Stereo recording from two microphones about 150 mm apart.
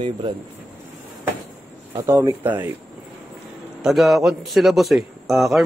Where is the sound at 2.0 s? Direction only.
20° right (ahead or behind).